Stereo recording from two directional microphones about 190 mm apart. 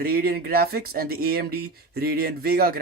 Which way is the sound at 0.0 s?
50° right (ahead or behind).